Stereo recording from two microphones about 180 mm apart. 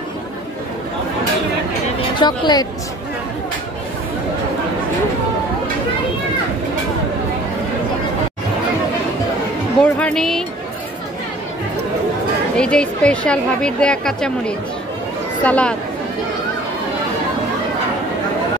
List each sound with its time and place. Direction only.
2.0 s speech: 25° left (ahead or behind)
9.9 s a woman's voice: 5° left (ahead or behind)
12.5 s a woman's voice: 5° left (ahead or behind)